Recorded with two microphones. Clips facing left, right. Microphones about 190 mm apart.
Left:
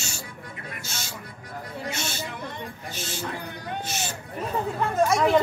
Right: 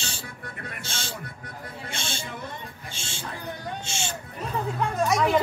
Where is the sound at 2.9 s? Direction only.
30° right (ahead or behind).